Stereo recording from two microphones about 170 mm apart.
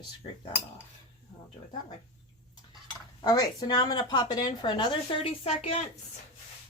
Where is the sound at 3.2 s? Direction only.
20° left (ahead or behind); by 5.7 s 35° left (ahead or behind).